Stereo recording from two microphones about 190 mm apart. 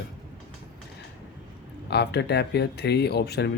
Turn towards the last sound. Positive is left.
turn(degrees=60)  # may be behind; listen again after turning